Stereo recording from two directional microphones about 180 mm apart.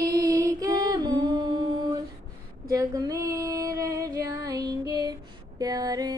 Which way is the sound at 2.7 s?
20° right (ahead or behind).